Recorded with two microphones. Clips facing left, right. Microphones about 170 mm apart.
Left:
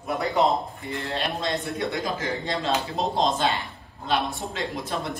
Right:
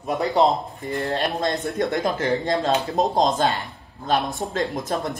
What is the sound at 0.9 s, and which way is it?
Speech, 45° right (ahead or behind).